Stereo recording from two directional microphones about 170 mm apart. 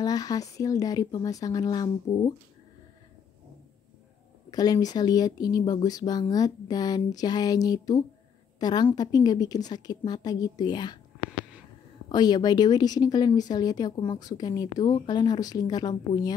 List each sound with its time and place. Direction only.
0.0 s speech: 20° left (ahead or behind)
4.5 s a woman's voice: 25° left (ahead or behind)
12.1 s speech: 25° left (ahead or behind)